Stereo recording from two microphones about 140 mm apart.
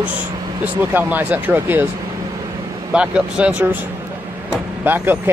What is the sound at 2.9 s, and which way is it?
Speech, 5° right (ahead or behind).